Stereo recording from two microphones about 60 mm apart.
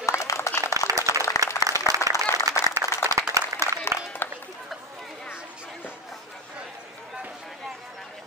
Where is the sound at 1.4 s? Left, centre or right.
Right.